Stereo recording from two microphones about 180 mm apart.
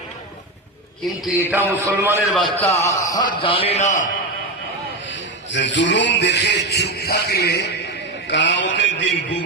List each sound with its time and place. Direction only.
1.4 s a man's voice: 10° right (ahead or behind)
2.6 s a man's voice: 15° left (ahead or behind)
3.4 s a man's voice: 30° left (ahead or behind)
5.0 s a man's voice: 90° left; by 7.7 s 65° left (ahead or behind)
8.3 s a man's voice: 80° left